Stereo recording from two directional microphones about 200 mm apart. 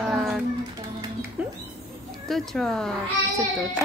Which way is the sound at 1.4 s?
5° right (ahead or behind).